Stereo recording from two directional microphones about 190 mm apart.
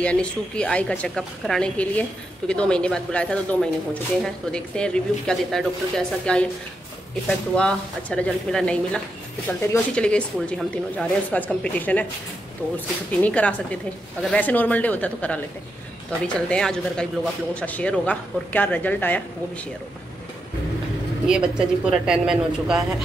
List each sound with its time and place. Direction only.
0.0 s a woman's voice: 5° left (ahead or behind)
13.2 s a man's voice: 5° left (ahead or behind)
21.3 s a woman's voice: 5° right (ahead or behind)